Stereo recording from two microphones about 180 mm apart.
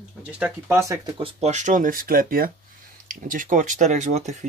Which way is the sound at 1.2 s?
35° right (ahead or behind).